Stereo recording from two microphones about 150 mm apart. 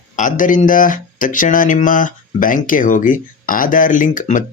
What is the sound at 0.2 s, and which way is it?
Speech, 60° left (ahead or behind).